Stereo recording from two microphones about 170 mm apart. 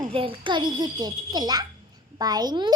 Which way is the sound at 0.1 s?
30° right (ahead or behind).